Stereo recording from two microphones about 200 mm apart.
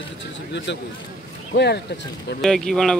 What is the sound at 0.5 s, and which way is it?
Speech, 60° left (ahead or behind).